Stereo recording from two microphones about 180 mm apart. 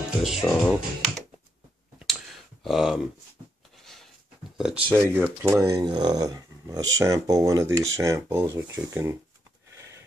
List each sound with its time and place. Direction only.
0.2 s speech: 5° right (ahead or behind)
2.0 s a sound: centre (ahead or behind)
4.6 s speech: 5° right (ahead or behind)